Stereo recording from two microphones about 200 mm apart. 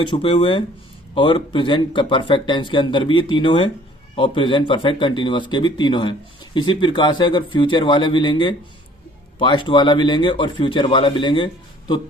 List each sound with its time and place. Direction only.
0.0 s speech: 25° left (ahead or behind)